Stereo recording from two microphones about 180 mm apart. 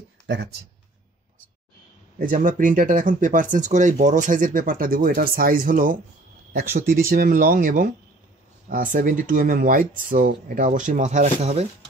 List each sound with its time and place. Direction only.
0.3 s speech: 70° right (ahead or behind)
2.1 s speech: 50° right (ahead or behind)